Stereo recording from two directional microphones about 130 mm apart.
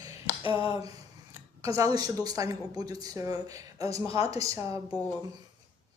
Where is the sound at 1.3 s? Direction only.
25° right (ahead or behind).